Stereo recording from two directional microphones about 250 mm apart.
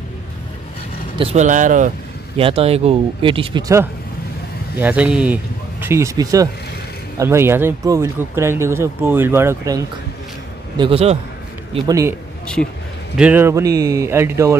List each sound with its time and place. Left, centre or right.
1.1 s speech: right
10.8 s speech: right